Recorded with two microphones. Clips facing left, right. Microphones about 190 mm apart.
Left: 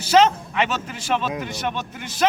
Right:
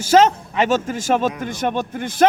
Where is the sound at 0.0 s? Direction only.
45° right (ahead or behind).